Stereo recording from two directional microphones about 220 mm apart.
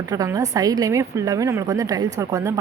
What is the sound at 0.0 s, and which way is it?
A woman's voice, 15° right (ahead or behind).